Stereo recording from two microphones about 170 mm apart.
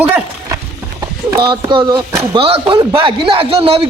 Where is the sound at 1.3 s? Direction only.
25° right (ahead or behind).